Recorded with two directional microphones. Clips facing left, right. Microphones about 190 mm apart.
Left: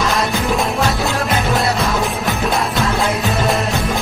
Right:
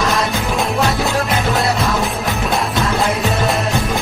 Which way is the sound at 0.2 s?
Centre (ahead or behind).